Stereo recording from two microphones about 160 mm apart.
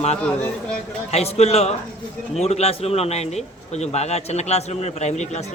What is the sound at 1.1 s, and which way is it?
A man's voice, 40° left (ahead or behind).